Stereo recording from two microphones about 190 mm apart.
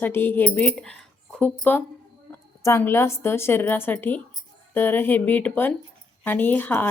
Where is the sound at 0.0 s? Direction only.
10° left (ahead or behind).